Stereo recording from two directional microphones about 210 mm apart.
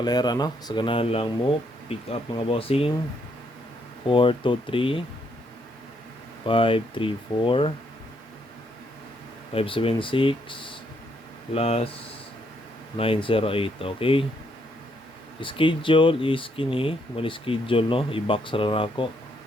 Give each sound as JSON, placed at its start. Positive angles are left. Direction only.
{"t": 0.0, "sound": "speech", "side_deg": 20}
{"t": 4.0, "sound": "speech", "side_deg": 25}
{"t": 6.4, "sound": "speech", "side_deg": 25}
{"t": 9.6, "sound": "speech", "side_deg": 25}
{"t": 13.0, "sound": "speech", "side_deg": 25}
{"t": 15.4, "sound": "speech", "side_deg": 25}